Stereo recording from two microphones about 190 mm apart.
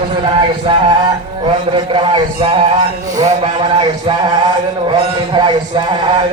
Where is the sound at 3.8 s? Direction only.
20° right (ahead or behind).